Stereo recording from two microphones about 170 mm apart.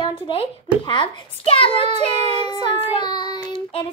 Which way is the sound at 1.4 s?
35° left (ahead or behind).